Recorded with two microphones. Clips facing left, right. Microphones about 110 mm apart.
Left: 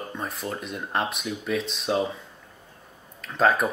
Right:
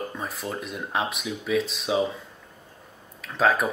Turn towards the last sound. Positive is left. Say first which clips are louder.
# left 1 dB
turn(degrees=0)  # may be behind; listen again after turning